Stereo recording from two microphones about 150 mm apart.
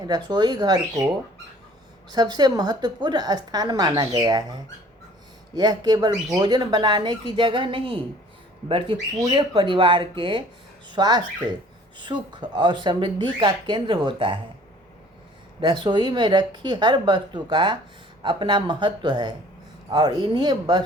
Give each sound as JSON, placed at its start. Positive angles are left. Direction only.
{"t": 0.0, "sound": "a woman's voice", "side_deg": -25}
{"t": 2.0, "sound": "a woman's voice", "side_deg": -30}
{"t": 15.6, "sound": "speech", "side_deg": -30}